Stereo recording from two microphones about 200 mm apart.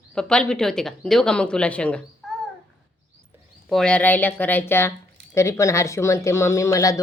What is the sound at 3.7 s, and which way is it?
Speech, 5° left (ahead or behind).